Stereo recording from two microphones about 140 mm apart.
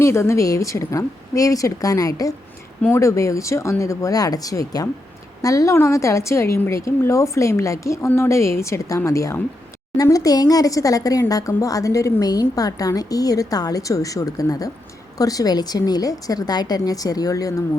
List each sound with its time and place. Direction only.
0.0 s speech: 20° left (ahead or behind)